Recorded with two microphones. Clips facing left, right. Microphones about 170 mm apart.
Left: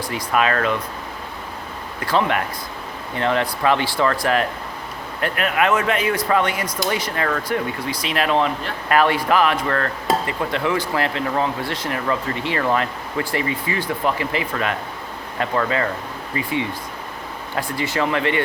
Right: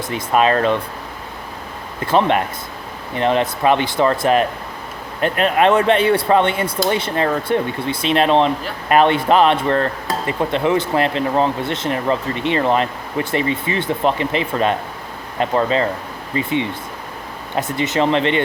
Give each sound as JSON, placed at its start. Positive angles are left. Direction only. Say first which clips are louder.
{"t": 0.1, "sound": "speech", "louder": "right 5 dB", "side_deg": -25}
{"t": 2.0, "sound": "speech", "louder": "right 4 dB", "side_deg": -25}